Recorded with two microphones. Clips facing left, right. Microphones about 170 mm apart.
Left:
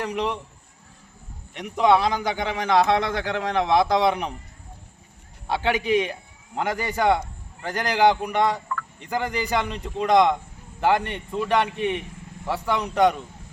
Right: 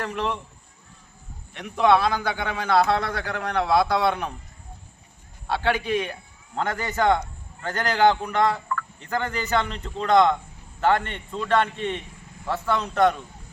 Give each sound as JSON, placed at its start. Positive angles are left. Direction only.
{"t": 0.0, "sound": "a man's voice", "side_deg": 15}
{"t": 1.5, "sound": "a man's voice", "side_deg": 15}
{"t": 5.5, "sound": "a man's voice", "side_deg": 15}